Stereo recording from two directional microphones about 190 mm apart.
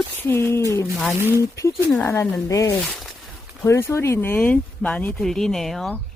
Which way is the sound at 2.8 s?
Centre (ahead or behind).